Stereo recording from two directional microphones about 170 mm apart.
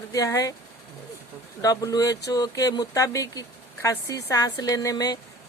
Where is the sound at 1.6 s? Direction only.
20° left (ahead or behind).